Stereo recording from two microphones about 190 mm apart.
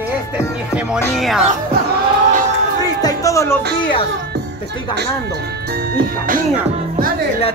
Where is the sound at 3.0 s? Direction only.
15° left (ahead or behind).